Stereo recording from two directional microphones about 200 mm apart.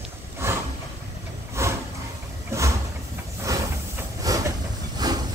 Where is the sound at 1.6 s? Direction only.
15° right (ahead or behind).